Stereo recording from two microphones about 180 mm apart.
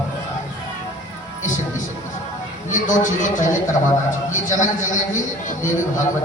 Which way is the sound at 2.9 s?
45° left (ahead or behind).